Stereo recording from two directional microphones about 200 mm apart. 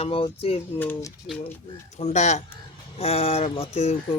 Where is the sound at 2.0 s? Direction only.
35° left (ahead or behind).